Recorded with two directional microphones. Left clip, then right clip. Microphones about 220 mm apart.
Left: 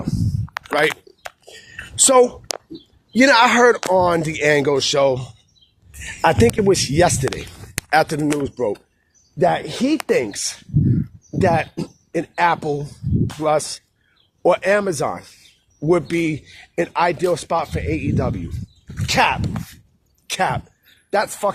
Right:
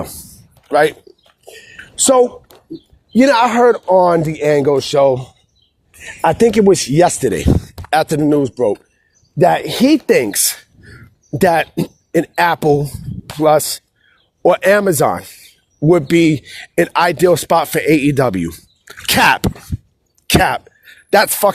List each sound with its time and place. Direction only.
1.5 s a sound: 40° right (ahead or behind)
3.1 s speech: 35° right (ahead or behind)
3.5 s speech: 20° right (ahead or behind)
9.4 s speech: 40° right (ahead or behind)
20.2 s speech: 40° right (ahead or behind)